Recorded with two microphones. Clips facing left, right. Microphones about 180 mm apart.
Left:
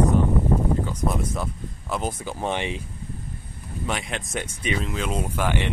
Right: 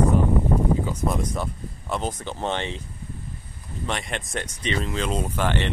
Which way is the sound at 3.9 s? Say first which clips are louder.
Even; centre (ahead or behind).